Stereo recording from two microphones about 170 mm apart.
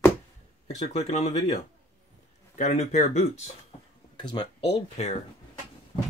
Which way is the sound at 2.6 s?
45° left (ahead or behind).